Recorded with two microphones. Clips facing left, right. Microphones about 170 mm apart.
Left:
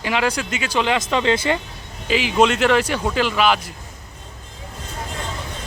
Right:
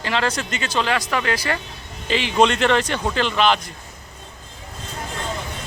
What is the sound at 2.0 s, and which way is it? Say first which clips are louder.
Speech: left 1 dB; 5° left (ahead or behind).